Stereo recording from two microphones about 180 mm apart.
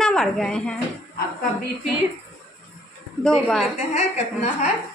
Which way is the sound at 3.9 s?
40° left (ahead or behind).